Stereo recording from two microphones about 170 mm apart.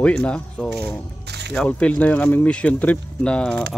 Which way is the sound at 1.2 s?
80° right.